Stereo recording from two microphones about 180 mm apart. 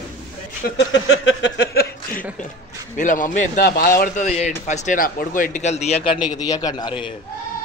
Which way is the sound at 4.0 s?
40° left (ahead or behind).